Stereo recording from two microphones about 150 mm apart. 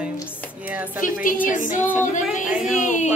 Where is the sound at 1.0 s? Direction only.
65° left (ahead or behind).